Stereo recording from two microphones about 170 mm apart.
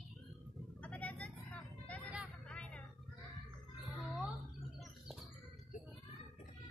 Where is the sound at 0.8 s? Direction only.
5° left (ahead or behind).